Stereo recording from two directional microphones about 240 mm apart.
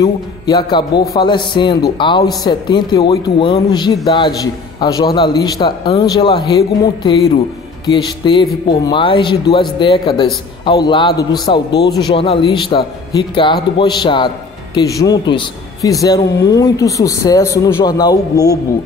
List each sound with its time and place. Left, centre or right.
0.0 s a man's voice: centre